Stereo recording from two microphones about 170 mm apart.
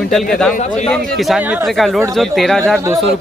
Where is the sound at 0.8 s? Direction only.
5° left (ahead or behind).